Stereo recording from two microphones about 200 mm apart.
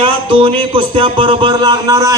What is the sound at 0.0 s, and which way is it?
Speech, 25° right (ahead or behind).